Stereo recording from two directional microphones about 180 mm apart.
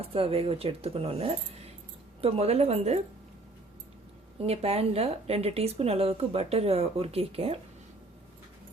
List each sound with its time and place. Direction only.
0.0 s speech: 30° right (ahead or behind)
4.4 s speech: 35° right (ahead or behind)